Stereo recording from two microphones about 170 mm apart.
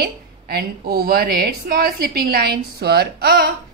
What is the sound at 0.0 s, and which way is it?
A woman's voice, 65° right (ahead or behind).